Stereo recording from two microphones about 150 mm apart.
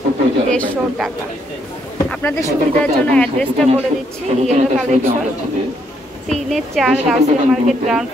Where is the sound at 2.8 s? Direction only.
5° left (ahead or behind).